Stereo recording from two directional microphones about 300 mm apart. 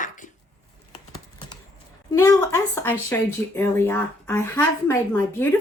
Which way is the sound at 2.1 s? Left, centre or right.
Centre.